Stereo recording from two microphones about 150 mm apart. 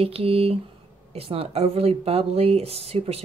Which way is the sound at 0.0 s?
40° right (ahead or behind).